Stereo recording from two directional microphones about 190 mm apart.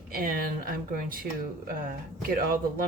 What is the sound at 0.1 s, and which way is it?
A man's voice, 50° right (ahead or behind).